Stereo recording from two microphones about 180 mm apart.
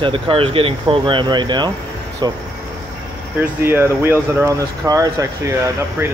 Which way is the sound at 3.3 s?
10° right (ahead or behind).